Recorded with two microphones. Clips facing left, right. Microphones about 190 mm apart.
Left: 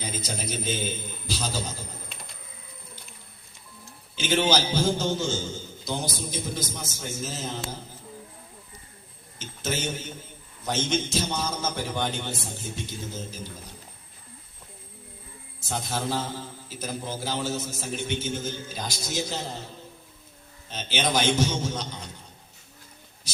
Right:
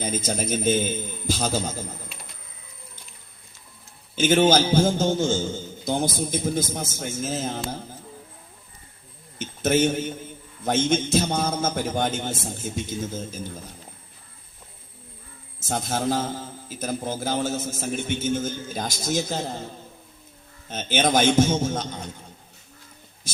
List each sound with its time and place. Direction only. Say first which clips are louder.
0.0 s a man's voice: right 6 dB; 50° right (ahead or behind)
4.1 s a man's voice: right 6 dB; 50° right (ahead or behind)
9.4 s a man's voice: right 10 dB; 55° right (ahead or behind)
15.6 s a man's voice: right 5 dB; 45° right (ahead or behind)
20.7 s a man's voice: right 5 dB; 50° right (ahead or behind)
23.3 s speech: right 6 dB; 50° right (ahead or behind)